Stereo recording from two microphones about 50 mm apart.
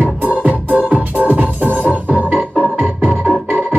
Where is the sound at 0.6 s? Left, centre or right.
Right.